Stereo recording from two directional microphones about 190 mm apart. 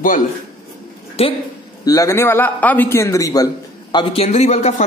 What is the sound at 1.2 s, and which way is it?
Speech, 30° left (ahead or behind).